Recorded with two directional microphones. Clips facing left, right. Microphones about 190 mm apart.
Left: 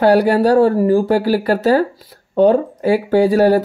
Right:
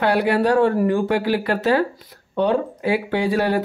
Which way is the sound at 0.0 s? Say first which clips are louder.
Left 6 dB; 40° left (ahead or behind).